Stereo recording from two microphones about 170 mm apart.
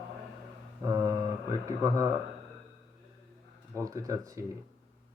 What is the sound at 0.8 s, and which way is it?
Mantra, 20° right (ahead or behind).